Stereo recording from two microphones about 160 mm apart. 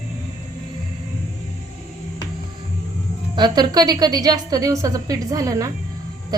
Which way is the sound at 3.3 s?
25° right (ahead or behind).